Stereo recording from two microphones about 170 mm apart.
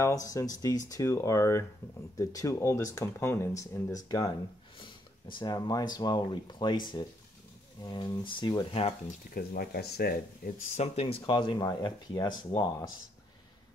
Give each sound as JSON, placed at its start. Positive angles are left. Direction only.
{"t": 0.0, "sound": "speech", "side_deg": 20}
{"t": 5.3, "sound": "speech", "side_deg": 25}
{"t": 9.3, "sound": "speech", "side_deg": 60}
{"t": 10.8, "sound": "speech", "side_deg": 35}